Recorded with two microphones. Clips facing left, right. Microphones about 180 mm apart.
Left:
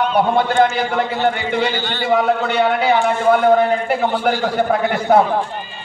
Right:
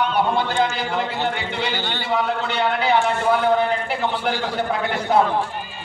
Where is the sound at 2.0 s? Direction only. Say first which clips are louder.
Left 7 dB; 50° left (ahead or behind).